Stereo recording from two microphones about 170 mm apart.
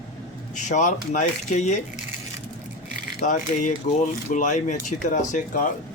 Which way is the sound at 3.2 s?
45° left (ahead or behind).